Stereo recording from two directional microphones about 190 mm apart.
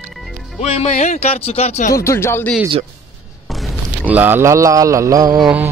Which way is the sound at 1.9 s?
15° left (ahead or behind).